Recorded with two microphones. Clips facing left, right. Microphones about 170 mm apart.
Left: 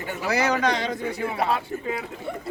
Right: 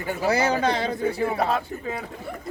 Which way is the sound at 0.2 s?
30° right (ahead or behind).